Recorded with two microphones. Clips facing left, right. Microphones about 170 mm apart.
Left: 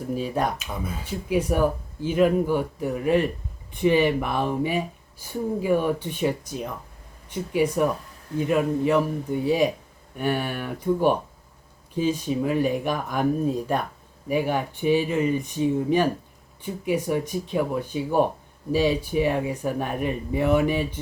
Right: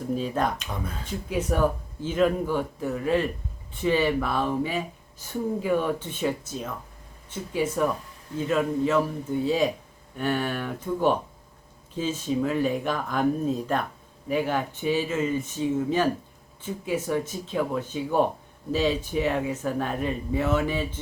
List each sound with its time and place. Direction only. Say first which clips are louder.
0.2 s speech: left 1 dB; 5° left (ahead or behind)